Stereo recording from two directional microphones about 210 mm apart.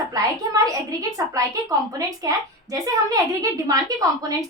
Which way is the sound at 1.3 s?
15° right (ahead or behind).